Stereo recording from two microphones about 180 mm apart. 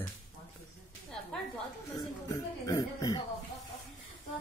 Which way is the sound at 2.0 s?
20° left (ahead or behind).